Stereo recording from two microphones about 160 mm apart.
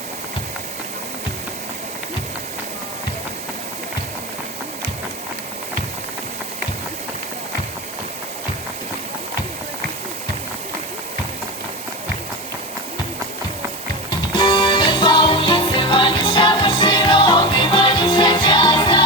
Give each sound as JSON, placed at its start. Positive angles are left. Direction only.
{"t": 14.3, "sound": "music", "side_deg": 25}